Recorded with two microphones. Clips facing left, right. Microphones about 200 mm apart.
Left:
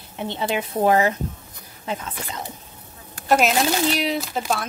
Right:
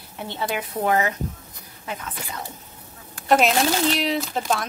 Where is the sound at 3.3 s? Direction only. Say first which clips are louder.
Even; centre (ahead or behind).